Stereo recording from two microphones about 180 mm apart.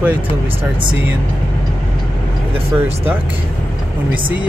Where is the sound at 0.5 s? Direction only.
30° right (ahead or behind).